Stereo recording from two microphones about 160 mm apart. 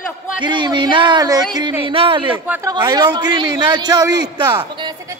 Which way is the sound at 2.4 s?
10° right (ahead or behind).